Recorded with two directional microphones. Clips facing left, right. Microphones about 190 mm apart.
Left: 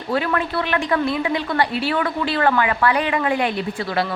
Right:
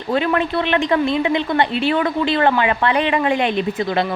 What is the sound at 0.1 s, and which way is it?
Speech, 20° right (ahead or behind).